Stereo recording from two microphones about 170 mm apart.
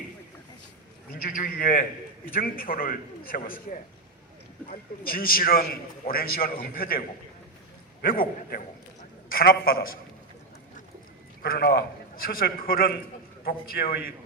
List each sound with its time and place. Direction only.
1.1 s a man's voice: 60° left (ahead or behind)
4.7 s a man's voice: 60° left (ahead or behind)
8.0 s a man's voice: 55° left (ahead or behind)
11.4 s a man's voice: 70° left (ahead or behind)